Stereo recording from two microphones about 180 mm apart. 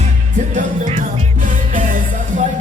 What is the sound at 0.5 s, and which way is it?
Music, 35° right (ahead or behind).